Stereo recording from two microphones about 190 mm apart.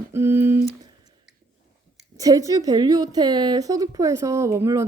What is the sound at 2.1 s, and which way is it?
A woman's voice, 20° right (ahead or behind).